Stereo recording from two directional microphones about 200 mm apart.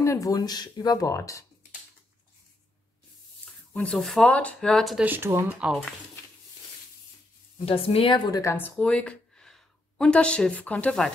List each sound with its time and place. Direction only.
0.0 s speech: 15° left (ahead or behind)
3.7 s speech: 5° left (ahead or behind)
7.5 s speech: 30° left (ahead or behind); by 11.1 s 5° left (ahead or behind)